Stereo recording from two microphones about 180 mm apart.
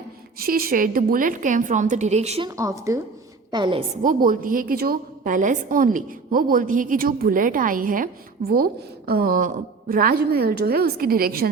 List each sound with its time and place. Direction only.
0.3 s a woman's voice: 55° right (ahead or behind); by 2.5 s 35° right (ahead or behind)
2.5 s a woman's voice: 15° right (ahead or behind)
4.0 s a woman's voice: 50° right (ahead or behind)